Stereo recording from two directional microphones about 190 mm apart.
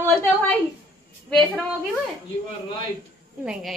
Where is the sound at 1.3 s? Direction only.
5° left (ahead or behind).